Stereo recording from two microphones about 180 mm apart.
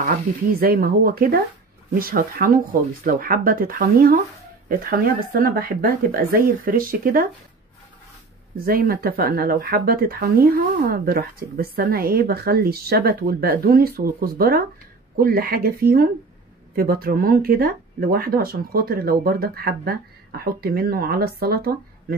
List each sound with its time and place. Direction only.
0.0 s speech: 55° right (ahead or behind)
8.6 s speech: 55° right (ahead or behind)